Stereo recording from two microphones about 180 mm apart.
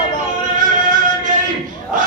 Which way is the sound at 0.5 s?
45° right (ahead or behind).